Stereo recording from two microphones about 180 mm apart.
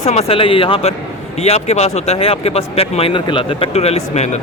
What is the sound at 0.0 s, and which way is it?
Speech, 35° left (ahead or behind).